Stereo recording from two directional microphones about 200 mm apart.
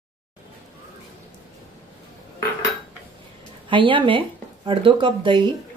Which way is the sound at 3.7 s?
25° right (ahead or behind).